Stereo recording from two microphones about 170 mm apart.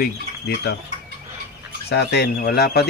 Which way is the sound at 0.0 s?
65° left (ahead or behind).